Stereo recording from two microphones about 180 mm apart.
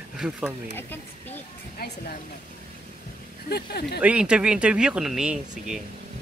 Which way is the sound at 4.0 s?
5° right (ahead or behind).